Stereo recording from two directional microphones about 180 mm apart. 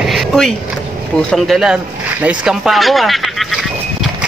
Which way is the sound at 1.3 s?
Centre (ahead or behind).